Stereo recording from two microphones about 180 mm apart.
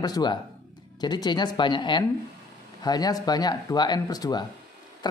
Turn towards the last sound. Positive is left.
turn(degrees=20)  # may be behind; listen again after turning